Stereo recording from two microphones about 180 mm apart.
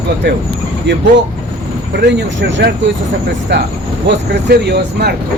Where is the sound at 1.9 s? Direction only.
75° right (ahead or behind).